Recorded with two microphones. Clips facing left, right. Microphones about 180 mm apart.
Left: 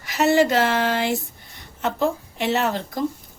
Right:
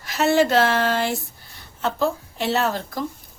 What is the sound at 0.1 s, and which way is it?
A woman's voice, 15° left (ahead or behind).